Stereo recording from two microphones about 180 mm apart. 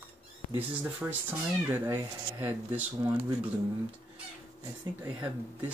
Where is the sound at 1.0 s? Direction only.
10° right (ahead or behind).